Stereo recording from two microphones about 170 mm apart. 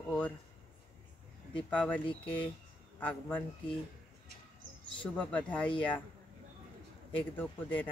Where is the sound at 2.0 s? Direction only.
30° left (ahead or behind).